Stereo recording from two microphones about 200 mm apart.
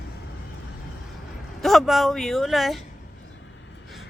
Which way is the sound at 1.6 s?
Centre (ahead or behind).